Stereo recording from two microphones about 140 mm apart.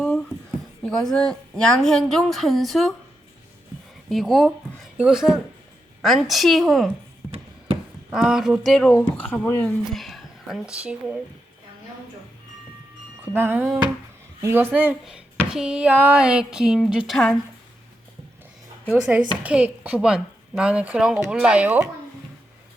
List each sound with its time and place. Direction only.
0.9 s a woman's voice: 5° left (ahead or behind)
4.1 s a woman's voice: centre (ahead or behind)
8.1 s a woman's voice: 5° right (ahead or behind)
13.2 s a woman's voice: 15° right (ahead or behind)
15.4 s a woman's voice: 5° right (ahead or behind)
18.9 s a woman's voice: 5° right (ahead or behind)